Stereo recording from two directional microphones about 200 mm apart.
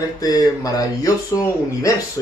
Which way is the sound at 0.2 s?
20° left (ahead or behind).